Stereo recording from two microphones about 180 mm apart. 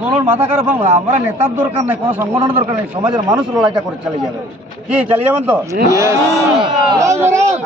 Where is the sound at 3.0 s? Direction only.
25° right (ahead or behind).